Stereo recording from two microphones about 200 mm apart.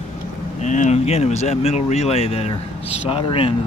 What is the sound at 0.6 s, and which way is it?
Speech, 35° left (ahead or behind).